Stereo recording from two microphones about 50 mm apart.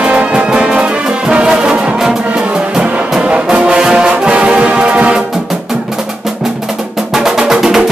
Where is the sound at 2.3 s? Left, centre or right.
Centre.